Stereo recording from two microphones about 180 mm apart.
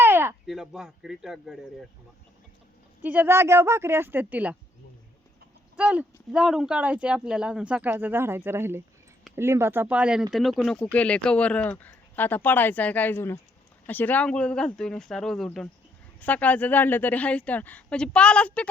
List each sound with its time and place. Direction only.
0.0 s a sound: 15° right (ahead or behind)
0.4 s speech: centre (ahead or behind)
3.0 s speech: 10° right (ahead or behind)
5.7 s speech: 5° right (ahead or behind)